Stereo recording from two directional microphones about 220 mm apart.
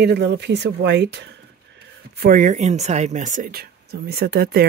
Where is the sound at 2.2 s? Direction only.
40° right (ahead or behind).